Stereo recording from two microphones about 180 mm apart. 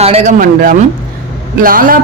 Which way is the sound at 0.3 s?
50° right (ahead or behind).